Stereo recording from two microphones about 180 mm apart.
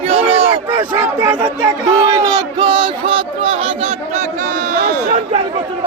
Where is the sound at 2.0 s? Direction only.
20° right (ahead or behind); by 5.2 s 50° right (ahead or behind).